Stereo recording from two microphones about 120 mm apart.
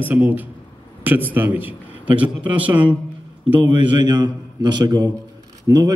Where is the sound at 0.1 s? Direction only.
15° right (ahead or behind).